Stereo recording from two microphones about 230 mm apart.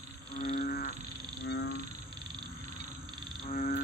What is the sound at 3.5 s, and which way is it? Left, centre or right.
Frog, left.